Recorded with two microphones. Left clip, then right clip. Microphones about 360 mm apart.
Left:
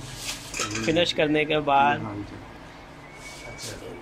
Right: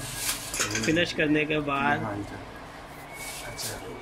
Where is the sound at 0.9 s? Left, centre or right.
Centre.